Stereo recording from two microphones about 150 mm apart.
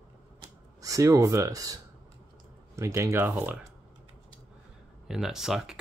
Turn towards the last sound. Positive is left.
turn(degrees=-5)  # may be behind; listen again after turning